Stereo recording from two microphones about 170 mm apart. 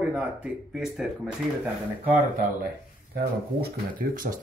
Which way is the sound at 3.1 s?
60° right (ahead or behind).